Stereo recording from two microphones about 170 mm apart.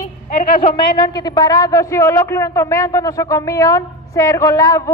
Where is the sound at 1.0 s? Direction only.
25° left (ahead or behind).